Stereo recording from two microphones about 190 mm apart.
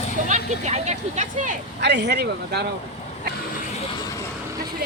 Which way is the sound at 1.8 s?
65° right (ahead or behind).